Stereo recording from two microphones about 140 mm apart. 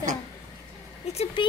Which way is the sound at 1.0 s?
50° left (ahead or behind).